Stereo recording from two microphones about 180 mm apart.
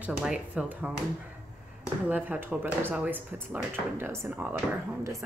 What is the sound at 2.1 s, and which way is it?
A woman's voice, 10° right (ahead or behind).